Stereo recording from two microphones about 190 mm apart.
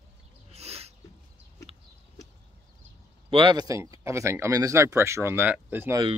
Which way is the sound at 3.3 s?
25° right (ahead or behind).